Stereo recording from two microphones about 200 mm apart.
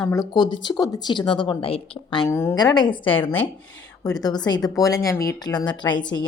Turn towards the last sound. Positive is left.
turn(degrees=20)  # may be behind; listen again after turning